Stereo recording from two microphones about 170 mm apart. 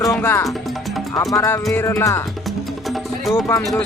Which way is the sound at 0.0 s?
15° left (ahead or behind).